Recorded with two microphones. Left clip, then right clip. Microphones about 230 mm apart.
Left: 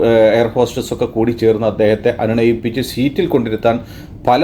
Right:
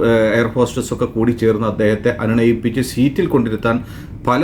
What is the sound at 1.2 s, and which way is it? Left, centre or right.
Speech, centre.